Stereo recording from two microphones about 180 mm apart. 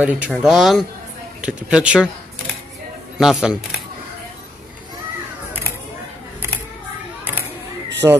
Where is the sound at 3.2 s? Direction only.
Centre (ahead or behind).